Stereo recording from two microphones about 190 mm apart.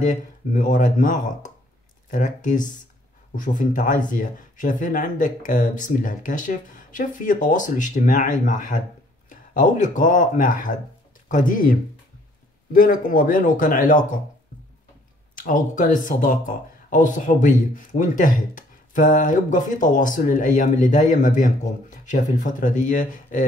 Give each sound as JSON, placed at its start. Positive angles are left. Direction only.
{"t": 0.0, "sound": "speech", "side_deg": 40}
{"t": 12.7, "sound": "speech", "side_deg": 50}
{"t": 15.4, "sound": "speech", "side_deg": 40}